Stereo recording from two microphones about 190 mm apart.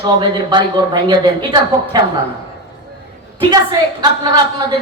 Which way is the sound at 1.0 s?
25° right (ahead or behind).